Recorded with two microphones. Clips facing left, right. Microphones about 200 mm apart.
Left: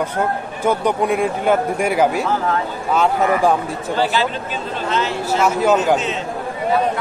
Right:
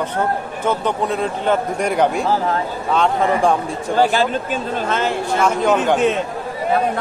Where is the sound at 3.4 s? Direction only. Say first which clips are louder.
Even; 5° left (ahead or behind).